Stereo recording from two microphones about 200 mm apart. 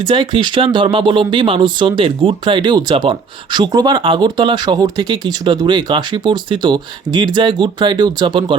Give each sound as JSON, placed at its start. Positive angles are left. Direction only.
{"t": 0.0, "sound": "speech", "side_deg": -25}